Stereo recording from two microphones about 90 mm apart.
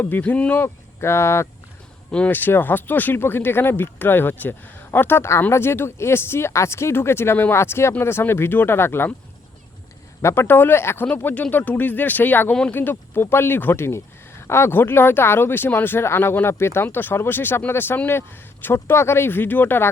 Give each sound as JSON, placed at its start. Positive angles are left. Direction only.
{"t": 0.0, "sound": "speech", "side_deg": 20}
{"t": 2.0, "sound": "speech", "side_deg": 15}
{"t": 10.2, "sound": "speech", "side_deg": 30}